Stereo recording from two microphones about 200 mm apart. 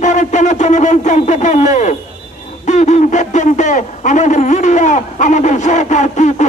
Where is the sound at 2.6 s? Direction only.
35° left (ahead or behind).